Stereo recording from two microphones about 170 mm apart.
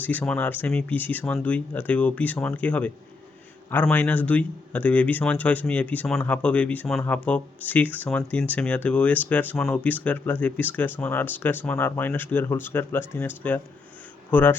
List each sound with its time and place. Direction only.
0.0 s speech: 10° left (ahead or behind)